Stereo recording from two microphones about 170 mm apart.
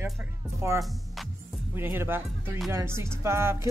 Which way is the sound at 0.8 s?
Centre (ahead or behind).